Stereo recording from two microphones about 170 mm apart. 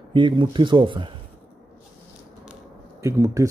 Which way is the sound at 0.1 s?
30° right (ahead or behind).